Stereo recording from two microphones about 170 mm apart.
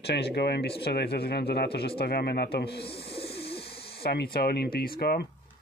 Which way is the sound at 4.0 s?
70° left (ahead or behind).